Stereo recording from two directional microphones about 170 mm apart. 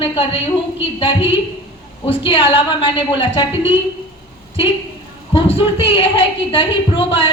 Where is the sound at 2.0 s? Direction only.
30° left (ahead or behind).